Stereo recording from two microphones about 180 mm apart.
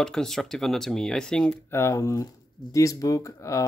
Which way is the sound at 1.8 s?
15° left (ahead or behind).